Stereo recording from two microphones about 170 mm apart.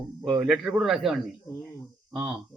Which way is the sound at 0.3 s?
5° right (ahead or behind).